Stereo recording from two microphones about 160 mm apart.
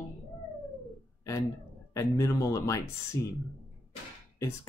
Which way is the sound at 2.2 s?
20° left (ahead or behind).